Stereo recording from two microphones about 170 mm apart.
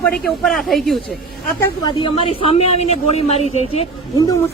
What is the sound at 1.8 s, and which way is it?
A man's voice, 30° left (ahead or behind).